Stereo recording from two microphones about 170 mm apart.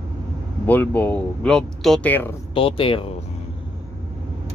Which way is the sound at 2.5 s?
30° left (ahead or behind).